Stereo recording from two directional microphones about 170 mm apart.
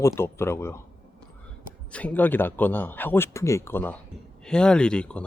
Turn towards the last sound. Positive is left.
turn(degrees=5)  # may be behind; listen again after turning